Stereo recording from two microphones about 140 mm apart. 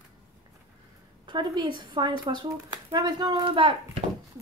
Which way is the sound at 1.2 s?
35° right (ahead or behind).